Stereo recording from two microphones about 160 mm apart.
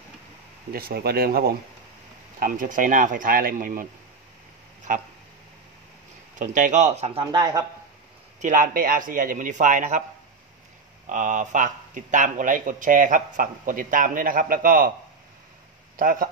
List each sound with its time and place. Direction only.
0.7 s speech: 70° right (ahead or behind)
2.4 s speech: 55° right (ahead or behind)
4.9 s speech: 55° right (ahead or behind)
6.3 s speech: 55° right (ahead or behind)
7.3 s speech: 25° right (ahead or behind)
8.4 s speech: 55° right (ahead or behind)
11.1 s speech: 50° right (ahead or behind)
16.0 s speech: 60° right (ahead or behind)